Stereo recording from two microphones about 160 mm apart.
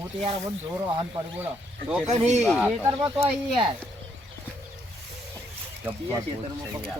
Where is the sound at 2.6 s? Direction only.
10° right (ahead or behind).